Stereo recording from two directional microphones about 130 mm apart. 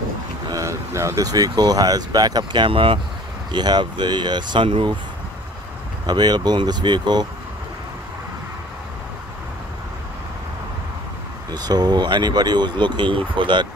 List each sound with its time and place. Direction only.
0.5 s speech: 25° right (ahead or behind); by 4.9 s 40° right (ahead or behind)
6.0 s speech: 35° right (ahead or behind)
11.5 s speech: 30° right (ahead or behind)